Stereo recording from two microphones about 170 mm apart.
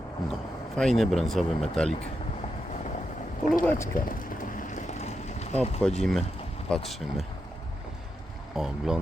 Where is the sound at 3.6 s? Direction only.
10° left (ahead or behind).